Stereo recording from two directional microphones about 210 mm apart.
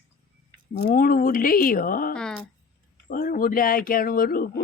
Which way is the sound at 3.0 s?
40° left (ahead or behind).